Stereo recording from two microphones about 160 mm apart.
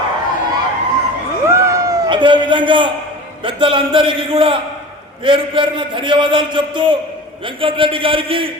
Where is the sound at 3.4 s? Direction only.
30° right (ahead or behind).